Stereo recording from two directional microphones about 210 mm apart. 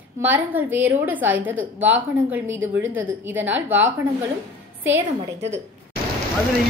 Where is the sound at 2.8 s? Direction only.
70° right (ahead or behind).